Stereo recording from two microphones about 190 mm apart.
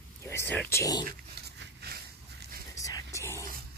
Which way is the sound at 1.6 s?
60° right (ahead or behind).